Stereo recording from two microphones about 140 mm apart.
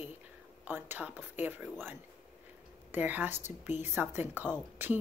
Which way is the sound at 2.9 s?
15° right (ahead or behind).